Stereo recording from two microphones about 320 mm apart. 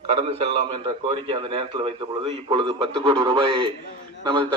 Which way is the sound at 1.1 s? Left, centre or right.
Centre.